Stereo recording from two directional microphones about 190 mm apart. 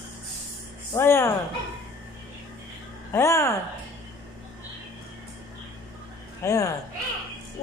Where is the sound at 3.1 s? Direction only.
15° left (ahead or behind).